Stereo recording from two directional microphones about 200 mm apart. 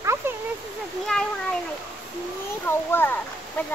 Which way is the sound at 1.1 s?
5° left (ahead or behind).